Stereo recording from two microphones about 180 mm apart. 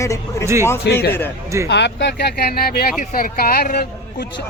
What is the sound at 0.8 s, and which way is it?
Speech, 65° left (ahead or behind).